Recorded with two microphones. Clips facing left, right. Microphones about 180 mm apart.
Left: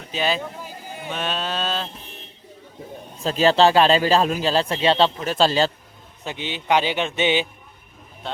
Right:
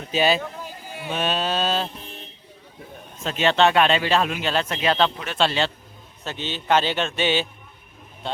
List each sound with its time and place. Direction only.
0.1 s mantra: 5° right (ahead or behind)
3.2 s speech: 35° left (ahead or behind)
6.2 s a man's voice: 15° left (ahead or behind)